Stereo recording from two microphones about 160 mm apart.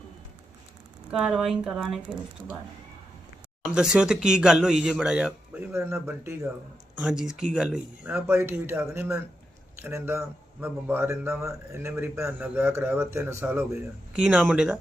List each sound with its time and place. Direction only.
1.1 s speech: 5° right (ahead or behind)
3.7 s speech: 5° right (ahead or behind)
7.0 s a man's voice: 5° right (ahead or behind)